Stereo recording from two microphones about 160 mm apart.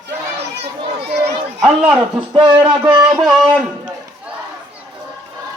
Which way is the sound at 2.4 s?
30° right (ahead or behind).